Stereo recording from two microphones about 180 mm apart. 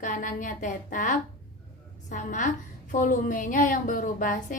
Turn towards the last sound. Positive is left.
turn(degrees=50)  # may be behind; listen again after turning